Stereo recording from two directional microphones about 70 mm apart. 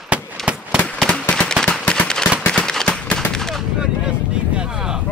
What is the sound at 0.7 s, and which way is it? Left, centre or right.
Firecracker, centre.